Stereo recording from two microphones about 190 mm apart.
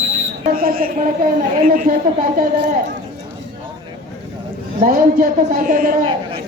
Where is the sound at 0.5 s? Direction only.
50° right (ahead or behind).